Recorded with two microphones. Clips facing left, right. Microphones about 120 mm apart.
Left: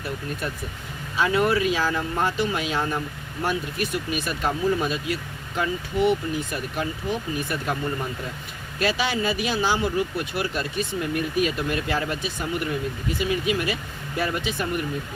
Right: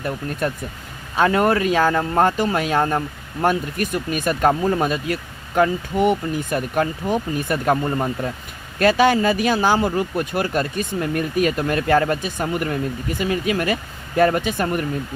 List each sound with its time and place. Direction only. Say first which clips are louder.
0.4 s speech: right 7 dB; 50° right (ahead or behind)